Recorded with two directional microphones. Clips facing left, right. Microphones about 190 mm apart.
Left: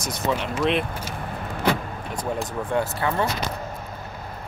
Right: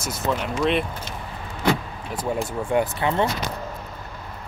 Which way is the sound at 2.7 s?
20° right (ahead or behind).